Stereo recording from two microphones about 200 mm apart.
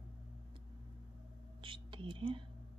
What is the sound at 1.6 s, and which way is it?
Speech, 25° right (ahead or behind).